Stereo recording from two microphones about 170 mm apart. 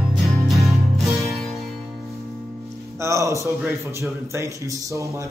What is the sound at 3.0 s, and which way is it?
Speech, 20° right (ahead or behind).